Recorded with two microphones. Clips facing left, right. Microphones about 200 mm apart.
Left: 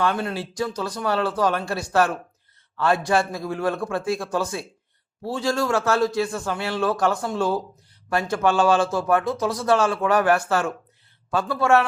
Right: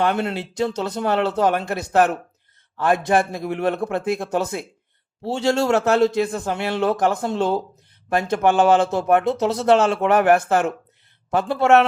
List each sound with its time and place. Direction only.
0.0 s a man's voice: 25° right (ahead or behind)